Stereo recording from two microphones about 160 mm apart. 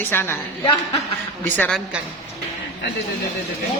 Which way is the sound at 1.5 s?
10° left (ahead or behind).